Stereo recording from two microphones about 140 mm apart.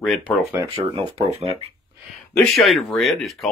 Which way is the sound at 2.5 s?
Centre (ahead or behind).